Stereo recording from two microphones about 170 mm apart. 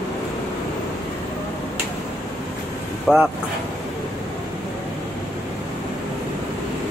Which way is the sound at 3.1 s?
5° right (ahead or behind).